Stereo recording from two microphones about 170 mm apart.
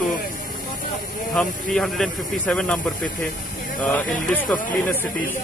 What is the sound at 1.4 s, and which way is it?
Speech, 5° left (ahead or behind).